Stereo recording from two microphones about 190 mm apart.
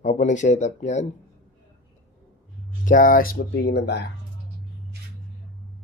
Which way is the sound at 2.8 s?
45° left (ahead or behind).